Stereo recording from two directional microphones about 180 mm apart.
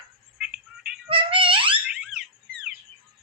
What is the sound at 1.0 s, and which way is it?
Music, 30° right (ahead or behind).